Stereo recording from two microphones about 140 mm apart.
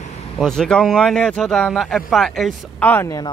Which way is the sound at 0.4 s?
5° left (ahead or behind).